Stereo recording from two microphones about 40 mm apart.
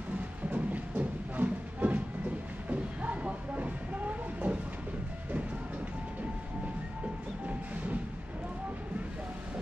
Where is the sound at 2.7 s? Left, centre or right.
Right.